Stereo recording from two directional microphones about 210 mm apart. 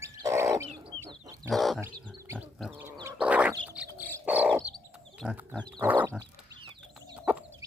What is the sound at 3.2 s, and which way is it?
Bird, 5° right (ahead or behind).